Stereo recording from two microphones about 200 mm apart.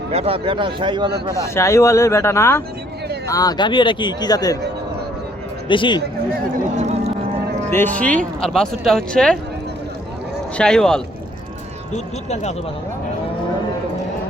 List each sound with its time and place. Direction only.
0.1 s speech: 30° right (ahead or behind)
1.5 s speech: 15° left (ahead or behind)
5.6 s speech: 25° left (ahead or behind)
6.7 s speech: 35° right (ahead or behind)
7.7 s speech: 10° left (ahead or behind)
10.6 s speech: 5° left (ahead or behind)
11.9 s speech: 35° left (ahead or behind)